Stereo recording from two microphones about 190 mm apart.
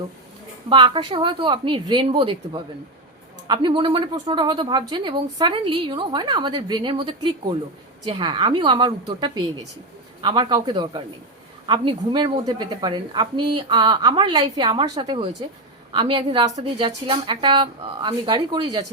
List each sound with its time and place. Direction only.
0.7 s speech: 25° right (ahead or behind)